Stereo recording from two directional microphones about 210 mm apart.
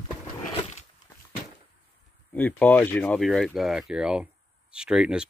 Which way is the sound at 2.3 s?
10° left (ahead or behind).